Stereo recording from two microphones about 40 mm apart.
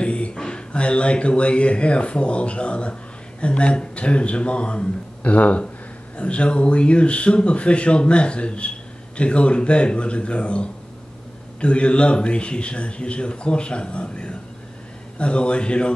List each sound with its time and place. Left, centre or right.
0.0 s a man's voice: left